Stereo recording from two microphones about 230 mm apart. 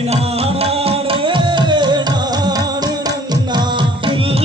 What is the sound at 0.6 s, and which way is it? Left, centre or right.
Music, right.